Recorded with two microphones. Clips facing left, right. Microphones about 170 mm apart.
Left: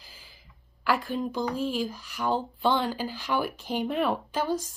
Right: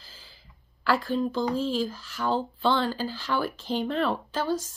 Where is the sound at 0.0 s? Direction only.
15° left (ahead or behind).